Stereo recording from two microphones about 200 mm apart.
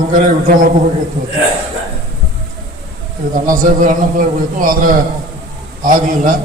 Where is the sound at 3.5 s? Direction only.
40° right (ahead or behind).